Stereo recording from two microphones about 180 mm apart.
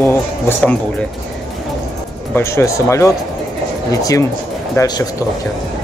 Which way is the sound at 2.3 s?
15° left (ahead or behind).